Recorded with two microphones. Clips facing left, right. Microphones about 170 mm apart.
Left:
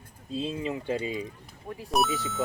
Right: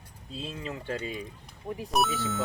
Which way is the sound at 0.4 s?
20° left (ahead or behind).